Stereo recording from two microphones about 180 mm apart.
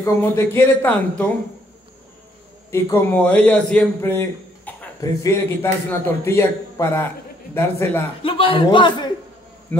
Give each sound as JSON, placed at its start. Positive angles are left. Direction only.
{"t": 0.0, "sound": "a man's voice", "side_deg": 15}
{"t": 2.7, "sound": "a man's voice", "side_deg": 10}
{"t": 8.2, "sound": "a man's voice", "side_deg": 30}
{"t": 9.7, "sound": "a man's voice", "side_deg": 10}